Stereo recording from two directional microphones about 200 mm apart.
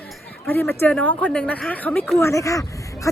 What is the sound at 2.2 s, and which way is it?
Speech, 15° left (ahead or behind).